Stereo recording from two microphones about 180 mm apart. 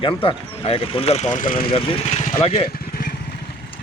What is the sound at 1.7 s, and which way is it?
Speech, 30° left (ahead or behind).